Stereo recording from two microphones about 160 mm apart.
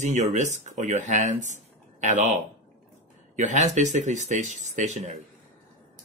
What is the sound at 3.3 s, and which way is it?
Speech, 50° right (ahead or behind).